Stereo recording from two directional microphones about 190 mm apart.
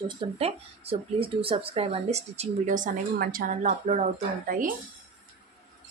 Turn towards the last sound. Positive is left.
turn(degrees=-45)  # may be behind; listen again after turning